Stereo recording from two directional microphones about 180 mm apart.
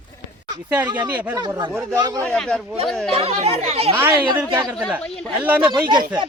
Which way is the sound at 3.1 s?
35° right (ahead or behind).